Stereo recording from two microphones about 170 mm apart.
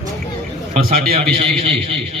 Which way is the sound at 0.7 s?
55° right (ahead or behind).